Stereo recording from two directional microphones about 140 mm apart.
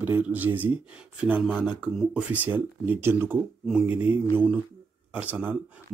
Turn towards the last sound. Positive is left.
turn(degrees=-15)  # may be behind; listen again after turning